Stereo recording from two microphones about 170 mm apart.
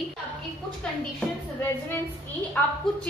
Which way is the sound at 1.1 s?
10° left (ahead or behind).